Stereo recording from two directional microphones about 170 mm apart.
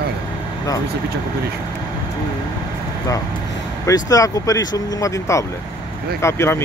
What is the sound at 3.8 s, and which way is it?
Speech, 20° left (ahead or behind).